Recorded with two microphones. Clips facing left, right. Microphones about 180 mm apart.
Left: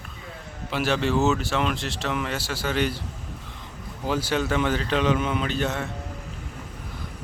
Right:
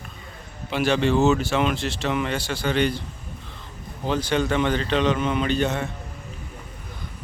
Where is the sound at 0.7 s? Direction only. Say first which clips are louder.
Right 3 dB; centre (ahead or behind).